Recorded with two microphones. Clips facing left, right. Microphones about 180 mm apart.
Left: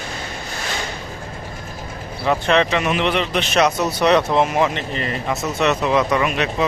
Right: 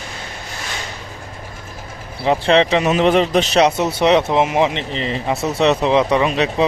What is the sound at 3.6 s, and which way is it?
Speech, 25° right (ahead or behind).